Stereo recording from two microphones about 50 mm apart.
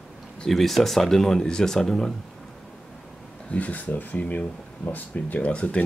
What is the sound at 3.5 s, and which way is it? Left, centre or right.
Speech, left.